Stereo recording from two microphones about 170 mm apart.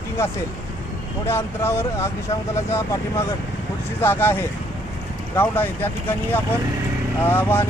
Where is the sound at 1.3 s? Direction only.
15° left (ahead or behind).